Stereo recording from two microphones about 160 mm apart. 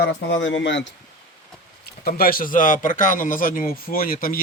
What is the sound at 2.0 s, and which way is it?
Speech, 70° left (ahead or behind).